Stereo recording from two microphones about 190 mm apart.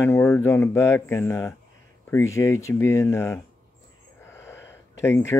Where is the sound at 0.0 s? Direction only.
10° left (ahead or behind).